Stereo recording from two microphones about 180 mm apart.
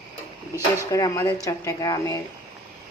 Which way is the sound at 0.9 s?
15° left (ahead or behind).